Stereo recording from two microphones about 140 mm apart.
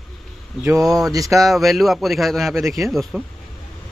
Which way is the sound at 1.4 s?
Centre (ahead or behind).